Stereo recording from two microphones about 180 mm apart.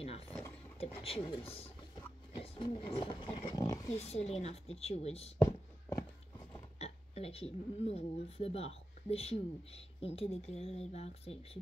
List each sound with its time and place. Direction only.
0.7 s speech: 30° left (ahead or behind)
2.3 s roaring cats: 25° left (ahead or behind)
3.9 s speech: 35° left (ahead or behind)
5.4 s a sound: 15° left (ahead or behind)
6.8 s speech: 35° left (ahead or behind)